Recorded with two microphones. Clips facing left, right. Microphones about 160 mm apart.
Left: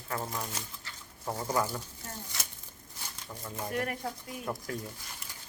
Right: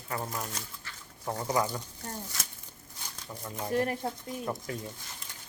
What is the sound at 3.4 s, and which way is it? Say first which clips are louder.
Speech: right 2 dB; centre (ahead or behind).